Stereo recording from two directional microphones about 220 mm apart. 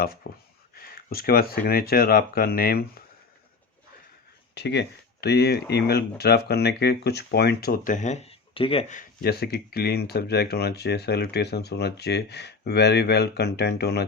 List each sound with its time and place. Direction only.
0.0 s speech: 40° left (ahead or behind)
4.5 s speech: 50° left (ahead or behind)